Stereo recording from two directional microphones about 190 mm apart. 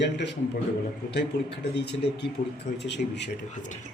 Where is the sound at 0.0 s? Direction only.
65° left (ahead or behind).